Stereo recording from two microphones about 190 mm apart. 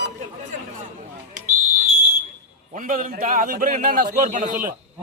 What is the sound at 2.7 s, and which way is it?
A man's voice, 45° right (ahead or behind).